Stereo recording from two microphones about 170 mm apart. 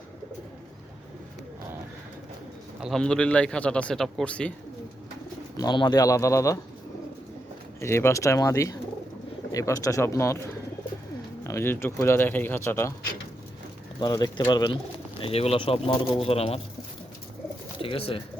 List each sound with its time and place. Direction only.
2.8 s a man's voice: 5° left (ahead or behind)
5.5 s speech: 25° left (ahead or behind)
7.8 s speech: 15° left (ahead or behind)
11.4 s speech: 15° left (ahead or behind)
14.0 s speech: 25° left (ahead or behind)
17.7 s speech: 30° left (ahead or behind)